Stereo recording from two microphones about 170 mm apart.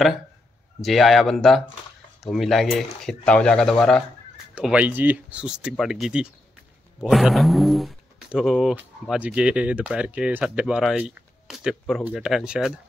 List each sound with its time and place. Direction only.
0.7 s speech: centre (ahead or behind)
4.6 s speech: 5° right (ahead or behind)